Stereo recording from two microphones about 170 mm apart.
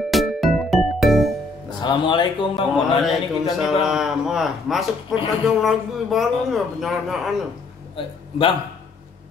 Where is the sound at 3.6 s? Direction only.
5° right (ahead or behind).